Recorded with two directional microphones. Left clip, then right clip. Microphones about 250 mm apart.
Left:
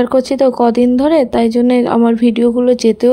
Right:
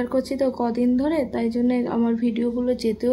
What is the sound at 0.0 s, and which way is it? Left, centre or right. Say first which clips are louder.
Speech: left 11 dB; left.